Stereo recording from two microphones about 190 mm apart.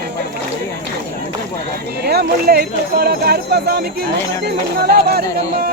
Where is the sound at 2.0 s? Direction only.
55° right (ahead or behind).